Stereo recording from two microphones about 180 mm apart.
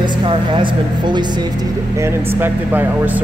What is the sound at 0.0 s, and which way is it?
Speech, 25° right (ahead or behind).